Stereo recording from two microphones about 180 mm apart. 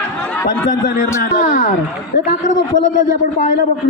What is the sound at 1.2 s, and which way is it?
Speech, 45° left (ahead or behind).